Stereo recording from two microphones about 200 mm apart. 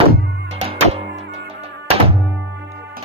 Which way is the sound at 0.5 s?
30° right (ahead or behind).